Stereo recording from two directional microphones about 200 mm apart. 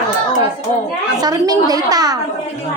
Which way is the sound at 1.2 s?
20° right (ahead or behind).